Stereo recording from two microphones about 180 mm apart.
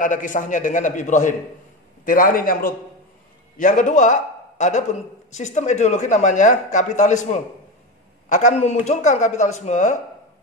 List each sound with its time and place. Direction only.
0.0 s a man's voice: 45° left (ahead or behind)
8.3 s a man's voice: 45° left (ahead or behind)